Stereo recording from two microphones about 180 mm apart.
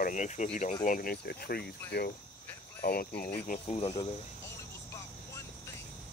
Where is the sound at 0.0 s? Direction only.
45° left (ahead or behind); by 3.3 s 60° left (ahead or behind).